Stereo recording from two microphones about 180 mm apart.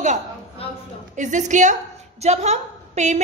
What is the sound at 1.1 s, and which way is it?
A woman's voice, 45° right (ahead or behind).